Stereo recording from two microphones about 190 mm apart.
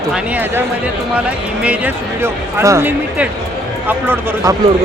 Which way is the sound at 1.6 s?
5° right (ahead or behind).